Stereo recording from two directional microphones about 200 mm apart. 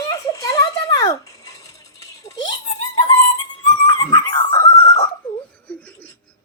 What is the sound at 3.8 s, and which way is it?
Dog, 20° left (ahead or behind).